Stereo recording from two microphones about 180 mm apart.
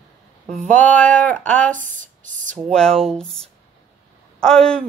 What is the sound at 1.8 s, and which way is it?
Speech, 45° right (ahead or behind).